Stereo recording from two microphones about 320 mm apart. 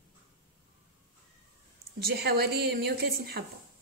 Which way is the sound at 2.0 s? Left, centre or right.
Right.